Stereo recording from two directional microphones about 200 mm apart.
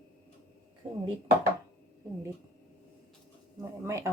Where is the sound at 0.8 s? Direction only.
25° right (ahead or behind).